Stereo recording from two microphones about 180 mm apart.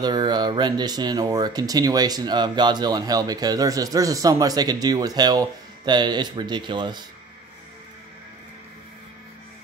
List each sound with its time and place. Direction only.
0.0 s speech: 25° right (ahead or behind)